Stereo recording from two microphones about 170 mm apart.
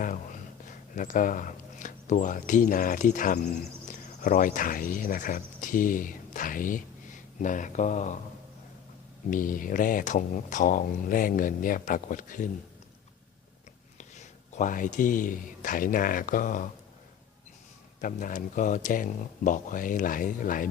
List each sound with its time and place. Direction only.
0.7 s speech: 50° left (ahead or behind)
9.3 s speech: 55° left (ahead or behind)
14.0 s speech: 45° left (ahead or behind)
18.0 s speech: 50° left (ahead or behind)